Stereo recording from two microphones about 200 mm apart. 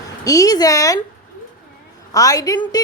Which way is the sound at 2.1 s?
15° left (ahead or behind).